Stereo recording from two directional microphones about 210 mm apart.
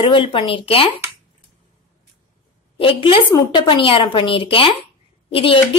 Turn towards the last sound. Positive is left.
turn(degrees=25)  # may be behind; listen again after turning